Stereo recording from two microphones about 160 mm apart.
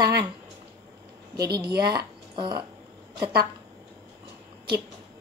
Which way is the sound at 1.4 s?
25° right (ahead or behind).